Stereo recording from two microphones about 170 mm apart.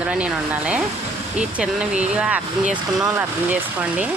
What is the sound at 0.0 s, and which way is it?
Speech, 5° right (ahead or behind).